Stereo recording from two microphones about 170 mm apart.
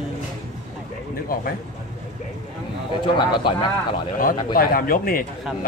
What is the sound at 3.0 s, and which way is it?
Speech, 30° left (ahead or behind).